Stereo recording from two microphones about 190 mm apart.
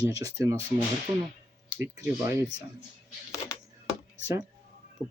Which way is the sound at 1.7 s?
10° right (ahead or behind).